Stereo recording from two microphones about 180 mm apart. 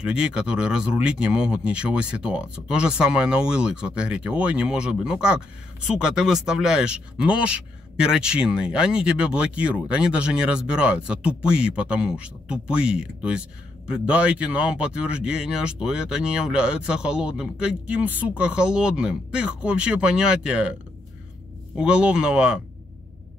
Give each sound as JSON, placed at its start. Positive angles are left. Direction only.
{"t": 0.0, "sound": "speech", "side_deg": -5}
{"t": 21.7, "sound": "speech", "side_deg": -5}